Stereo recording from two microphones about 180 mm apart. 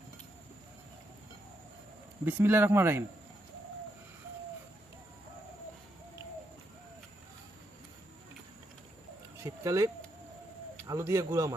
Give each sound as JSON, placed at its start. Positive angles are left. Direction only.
{"t": 2.2, "sound": "speech", "side_deg": -10}
{"t": 9.4, "sound": "speech", "side_deg": -15}